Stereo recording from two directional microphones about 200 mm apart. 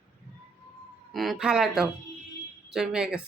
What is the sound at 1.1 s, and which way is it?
A woman's voice, centre (ahead or behind).